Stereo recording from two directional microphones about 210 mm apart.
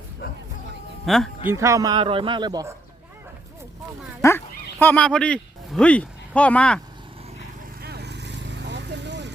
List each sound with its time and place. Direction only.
0.2 s music: 50° left (ahead or behind)
1.0 s speech: centre (ahead or behind)
1.5 s speech: 15° right (ahead or behind)
4.2 s speech: 10° left (ahead or behind)
7.8 s vehicle: 50° right (ahead or behind)